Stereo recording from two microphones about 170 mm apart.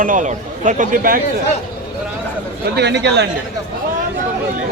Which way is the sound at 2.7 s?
85° right.